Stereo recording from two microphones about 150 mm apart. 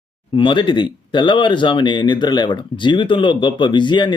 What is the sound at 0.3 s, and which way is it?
Speech, 35° left (ahead or behind).